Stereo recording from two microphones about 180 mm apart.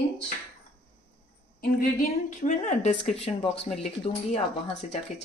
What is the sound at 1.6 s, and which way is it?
Speech, 55° left (ahead or behind).